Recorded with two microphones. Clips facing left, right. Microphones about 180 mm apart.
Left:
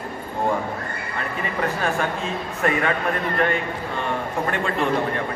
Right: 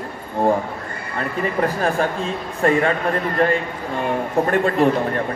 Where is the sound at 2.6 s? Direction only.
35° right (ahead or behind).